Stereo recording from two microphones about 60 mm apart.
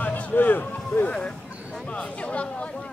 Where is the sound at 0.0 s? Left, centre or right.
Left.